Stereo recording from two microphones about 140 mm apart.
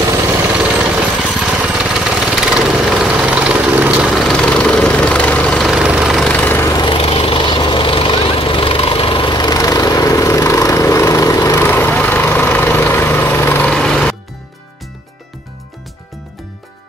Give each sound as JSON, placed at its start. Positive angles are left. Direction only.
{"t": 0.0, "sound": "jackhammer", "side_deg": -20}
{"t": 6.3, "sound": "vehicle", "side_deg": 15}
{"t": 6.7, "sound": "vehicle", "side_deg": 30}
{"t": 7.0, "sound": "vehicle", "side_deg": 45}
{"t": 11.7, "sound": "vehicle", "side_deg": 10}